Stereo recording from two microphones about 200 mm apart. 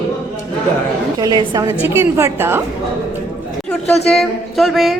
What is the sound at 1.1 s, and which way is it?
A woman's voice, 20° right (ahead or behind).